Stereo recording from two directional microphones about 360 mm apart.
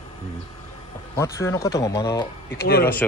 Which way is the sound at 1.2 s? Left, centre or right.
Centre.